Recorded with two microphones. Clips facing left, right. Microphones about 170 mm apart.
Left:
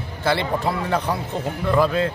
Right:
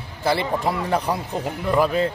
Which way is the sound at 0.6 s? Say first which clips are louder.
Even; 15° right (ahead or behind).